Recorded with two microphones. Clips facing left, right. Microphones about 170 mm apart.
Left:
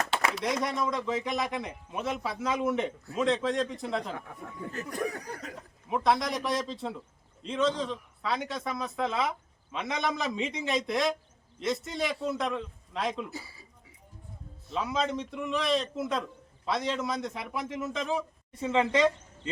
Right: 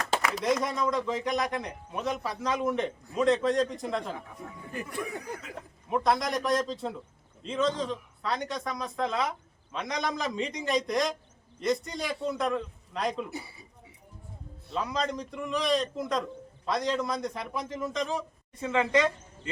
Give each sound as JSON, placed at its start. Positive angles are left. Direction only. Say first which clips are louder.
{"t": 0.4, "sound": "speech", "louder": "right 2 dB", "side_deg": 0}
{"t": 4.9, "sound": "chuckle", "louder": "left 5 dB", "side_deg": 40}
{"t": 5.9, "sound": "speech", "louder": "even", "side_deg": 0}
{"t": 14.7, "sound": "a man's voice", "louder": "left 1 dB", "side_deg": 5}
{"t": 18.6, "sound": "a woman's voice", "louder": "even", "side_deg": 25}